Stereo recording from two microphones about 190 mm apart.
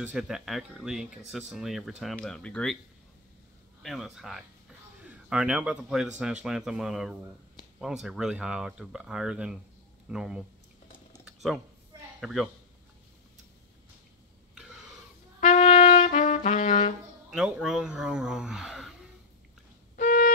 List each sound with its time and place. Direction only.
0.0 s speech: 5° right (ahead or behind)
3.8 s speech: centre (ahead or behind)
12.2 s speech: centre (ahead or behind)
15.4 s trumpet: 45° left (ahead or behind)
17.3 s speech: 5° right (ahead or behind)
20.0 s busy signal: 45° left (ahead or behind)